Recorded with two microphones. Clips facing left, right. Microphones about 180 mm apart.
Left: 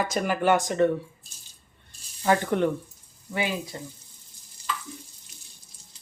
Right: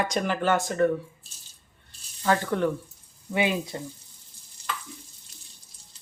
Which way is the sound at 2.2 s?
20° left (ahead or behind).